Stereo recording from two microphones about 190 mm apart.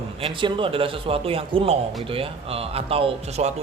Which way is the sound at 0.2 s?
25° right (ahead or behind).